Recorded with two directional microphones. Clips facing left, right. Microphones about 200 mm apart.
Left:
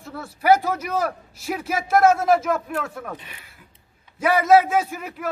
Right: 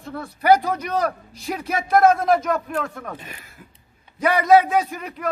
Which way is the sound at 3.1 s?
45° right (ahead or behind).